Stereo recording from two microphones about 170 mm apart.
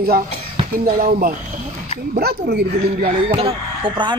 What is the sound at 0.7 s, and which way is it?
Speech, 60° right (ahead or behind).